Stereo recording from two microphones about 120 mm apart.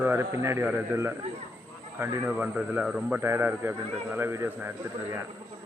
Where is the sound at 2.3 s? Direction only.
10° right (ahead or behind).